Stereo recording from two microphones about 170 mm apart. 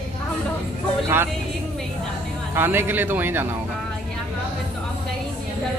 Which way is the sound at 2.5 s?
15° right (ahead or behind).